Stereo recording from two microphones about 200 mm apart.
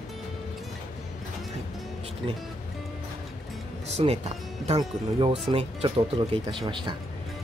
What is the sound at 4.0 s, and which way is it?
Speech, 30° right (ahead or behind).